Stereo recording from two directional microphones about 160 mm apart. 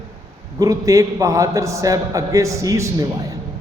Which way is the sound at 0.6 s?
20° right (ahead or behind).